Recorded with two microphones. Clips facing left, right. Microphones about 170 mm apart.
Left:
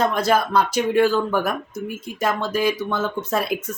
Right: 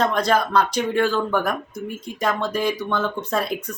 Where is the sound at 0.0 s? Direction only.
5° left (ahead or behind).